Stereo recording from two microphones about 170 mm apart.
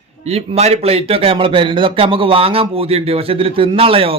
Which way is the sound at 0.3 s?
40° right (ahead or behind).